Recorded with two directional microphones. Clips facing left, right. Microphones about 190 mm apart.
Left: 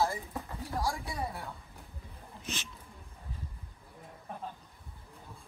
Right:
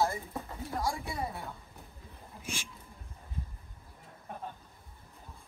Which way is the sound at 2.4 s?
10° right (ahead or behind).